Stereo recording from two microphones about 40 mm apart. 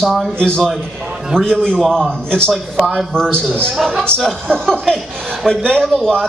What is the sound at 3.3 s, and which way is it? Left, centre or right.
Speech, left.